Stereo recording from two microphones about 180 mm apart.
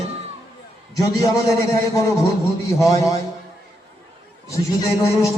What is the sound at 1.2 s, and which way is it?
A man's voice, 20° left (ahead or behind).